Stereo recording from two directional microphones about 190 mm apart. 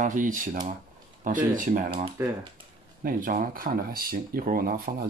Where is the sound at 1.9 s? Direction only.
25° right (ahead or behind).